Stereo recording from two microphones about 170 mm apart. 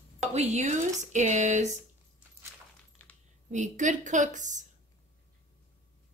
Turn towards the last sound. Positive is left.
turn(degrees=-45)  # may be behind; listen again after turning